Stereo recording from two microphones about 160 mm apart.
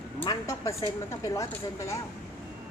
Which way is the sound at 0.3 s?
20° left (ahead or behind).